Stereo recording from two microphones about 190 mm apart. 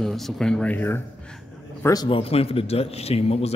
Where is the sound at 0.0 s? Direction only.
5° left (ahead or behind).